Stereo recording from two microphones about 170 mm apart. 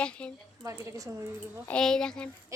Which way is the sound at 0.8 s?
20° right (ahead or behind).